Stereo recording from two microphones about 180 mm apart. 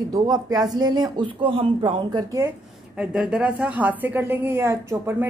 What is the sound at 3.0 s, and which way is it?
Speech, 5° right (ahead or behind).